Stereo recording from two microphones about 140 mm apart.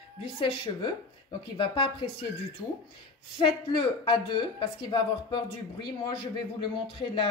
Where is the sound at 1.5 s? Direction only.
35° left (ahead or behind).